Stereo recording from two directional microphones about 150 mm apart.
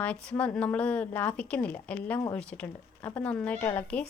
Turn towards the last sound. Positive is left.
turn(degrees=10)  # may be behind; listen again after turning